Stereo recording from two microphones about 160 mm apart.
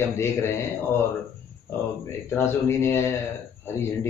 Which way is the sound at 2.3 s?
15° left (ahead or behind).